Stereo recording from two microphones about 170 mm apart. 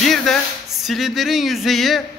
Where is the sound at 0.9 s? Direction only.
Centre (ahead or behind).